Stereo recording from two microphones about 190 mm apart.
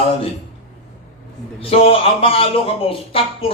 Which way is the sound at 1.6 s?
30° left (ahead or behind).